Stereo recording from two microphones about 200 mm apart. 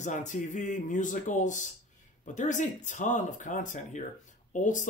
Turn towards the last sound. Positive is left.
turn(degrees=40)  # may be behind; listen again after turning